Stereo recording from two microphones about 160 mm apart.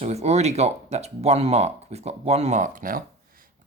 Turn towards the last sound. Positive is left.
turn(degrees=-60)  # may be behind; listen again after turning